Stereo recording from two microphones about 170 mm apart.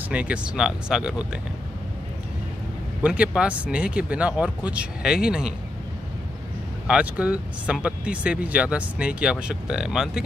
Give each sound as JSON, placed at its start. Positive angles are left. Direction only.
{"t": 0.1, "sound": "speech", "side_deg": -5}
{"t": 3.0, "sound": "speech", "side_deg": -5}
{"t": 6.9, "sound": "speech", "side_deg": -5}